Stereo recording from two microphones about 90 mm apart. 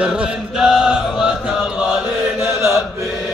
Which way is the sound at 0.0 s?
10° right (ahead or behind).